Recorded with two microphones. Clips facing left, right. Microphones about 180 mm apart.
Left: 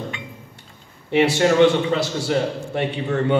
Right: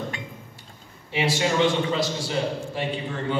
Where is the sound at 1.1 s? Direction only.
65° left (ahead or behind).